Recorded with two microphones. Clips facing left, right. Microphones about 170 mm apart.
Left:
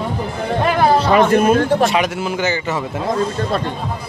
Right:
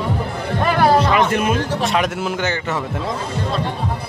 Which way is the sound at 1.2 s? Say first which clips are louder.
Left 5 dB; 45° left (ahead or behind).